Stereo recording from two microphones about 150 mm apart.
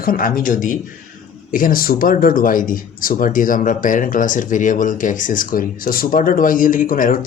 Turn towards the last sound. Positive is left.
turn(degrees=60)  # may be behind; listen again after turning